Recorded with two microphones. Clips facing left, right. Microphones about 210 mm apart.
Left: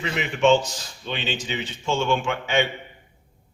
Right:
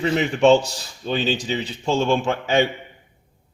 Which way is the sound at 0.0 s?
35° right (ahead or behind).